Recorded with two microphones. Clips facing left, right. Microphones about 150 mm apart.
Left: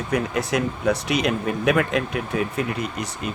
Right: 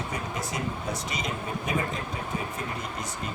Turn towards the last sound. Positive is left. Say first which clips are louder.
# left 6 dB
turn(degrees=75)  # may be behind; listen again after turning